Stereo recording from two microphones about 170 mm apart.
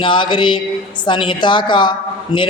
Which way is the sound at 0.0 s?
30° left (ahead or behind).